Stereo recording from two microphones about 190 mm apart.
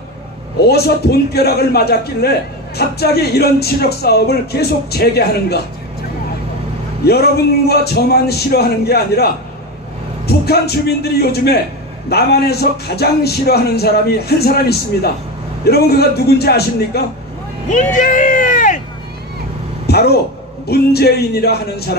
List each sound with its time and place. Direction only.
0.7 s speech: 55° left (ahead or behind)
7.1 s speech: 55° left (ahead or behind)
17.9 s speech: 40° left (ahead or behind)
19.9 s speech: 55° left (ahead or behind)